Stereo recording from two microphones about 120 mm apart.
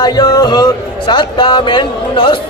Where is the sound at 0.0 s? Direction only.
35° left (ahead or behind).